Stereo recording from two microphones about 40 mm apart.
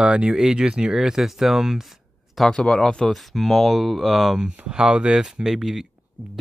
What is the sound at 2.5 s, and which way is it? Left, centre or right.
Speech, centre.